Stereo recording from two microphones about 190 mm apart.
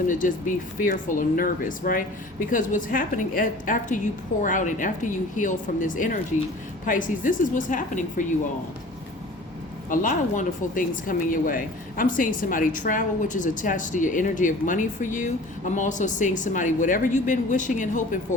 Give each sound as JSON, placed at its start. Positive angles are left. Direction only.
{"t": 0.1, "sound": "speech", "side_deg": 45}
{"t": 9.9, "sound": "speech", "side_deg": 45}